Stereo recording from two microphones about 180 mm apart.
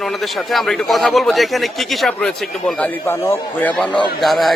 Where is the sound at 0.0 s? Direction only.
Centre (ahead or behind).